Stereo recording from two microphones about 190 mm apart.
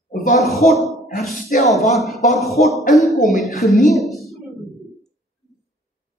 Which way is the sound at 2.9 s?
Centre (ahead or behind).